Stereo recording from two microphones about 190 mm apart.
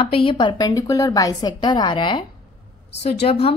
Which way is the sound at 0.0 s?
30° left (ahead or behind).